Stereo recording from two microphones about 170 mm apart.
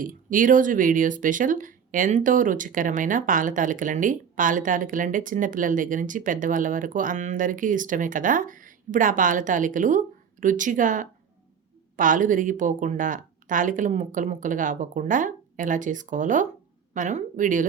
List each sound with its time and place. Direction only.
0.0 s speech: 55° right (ahead or behind)